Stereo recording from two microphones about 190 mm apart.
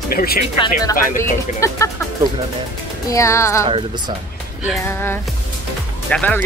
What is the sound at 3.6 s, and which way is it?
Speech, 30° right (ahead or behind).